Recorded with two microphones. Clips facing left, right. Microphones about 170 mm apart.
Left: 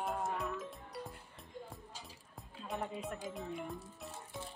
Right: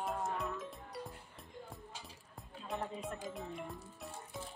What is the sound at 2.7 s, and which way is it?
Speech, centre (ahead or behind).